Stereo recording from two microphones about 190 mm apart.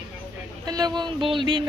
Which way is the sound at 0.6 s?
20° right (ahead or behind).